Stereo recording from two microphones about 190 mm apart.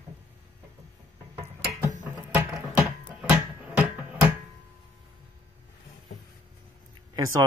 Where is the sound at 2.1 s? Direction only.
15° right (ahead or behind).